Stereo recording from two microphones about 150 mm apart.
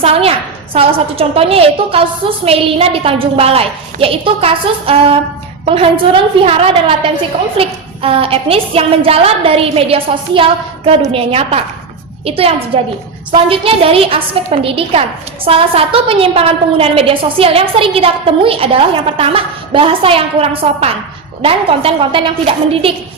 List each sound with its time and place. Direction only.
0.0 s a woman's voice: 40° right (ahead or behind)